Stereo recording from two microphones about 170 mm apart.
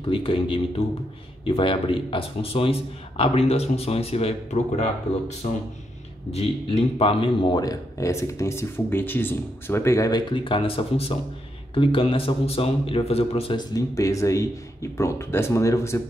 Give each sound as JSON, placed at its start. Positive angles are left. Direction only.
{"t": 0.0, "sound": "a man's voice", "side_deg": 30}